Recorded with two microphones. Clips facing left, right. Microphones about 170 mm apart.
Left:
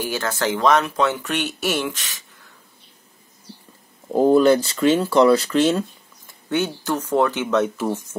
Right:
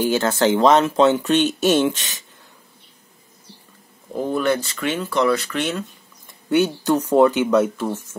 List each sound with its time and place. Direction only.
0.0 s speech: 25° right (ahead or behind)
4.1 s speech: 35° left (ahead or behind)
6.5 s speech: 15° right (ahead or behind)
7.4 s speech: 5° right (ahead or behind)
7.7 s speech: 5° left (ahead or behind)